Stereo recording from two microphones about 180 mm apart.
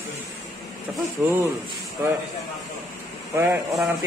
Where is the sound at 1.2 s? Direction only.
15° right (ahead or behind).